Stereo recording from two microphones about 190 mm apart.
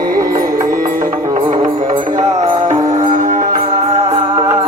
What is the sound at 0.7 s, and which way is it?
Music, 45° right (ahead or behind).